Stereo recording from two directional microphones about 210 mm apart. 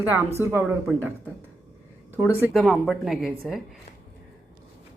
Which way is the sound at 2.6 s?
Centre (ahead or behind).